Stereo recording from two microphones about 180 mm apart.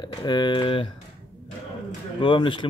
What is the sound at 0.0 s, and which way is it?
Speech, 25° left (ahead or behind).